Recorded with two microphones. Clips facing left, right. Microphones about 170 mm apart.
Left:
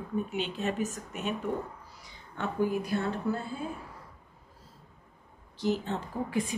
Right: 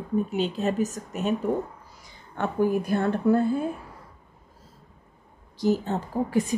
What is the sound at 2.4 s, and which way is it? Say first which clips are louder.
A woman's voice: right 5 dB; 50° right (ahead or behind).